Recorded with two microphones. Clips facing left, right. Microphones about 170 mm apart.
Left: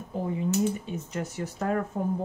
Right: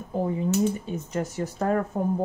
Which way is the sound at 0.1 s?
45° right (ahead or behind).